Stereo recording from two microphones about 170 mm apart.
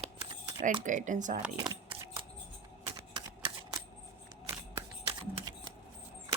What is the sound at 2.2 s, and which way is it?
Music, 30° right (ahead or behind).